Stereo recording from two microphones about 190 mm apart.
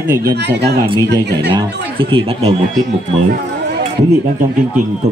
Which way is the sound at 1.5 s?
25° right (ahead or behind).